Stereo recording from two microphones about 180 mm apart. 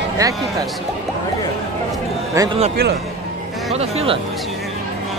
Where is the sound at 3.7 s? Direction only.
35° right (ahead or behind).